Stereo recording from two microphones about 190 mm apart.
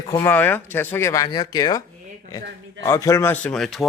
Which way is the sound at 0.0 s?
15° left (ahead or behind).